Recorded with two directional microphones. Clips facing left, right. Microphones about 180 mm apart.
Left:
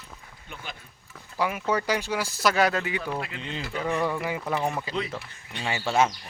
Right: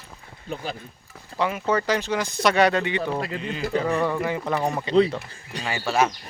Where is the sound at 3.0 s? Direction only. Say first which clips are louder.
Right 5 dB; 35° right (ahead or behind).